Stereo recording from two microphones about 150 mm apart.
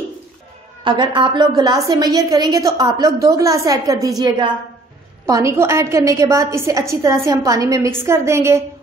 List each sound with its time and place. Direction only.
0.8 s a woman's voice: 30° right (ahead or behind)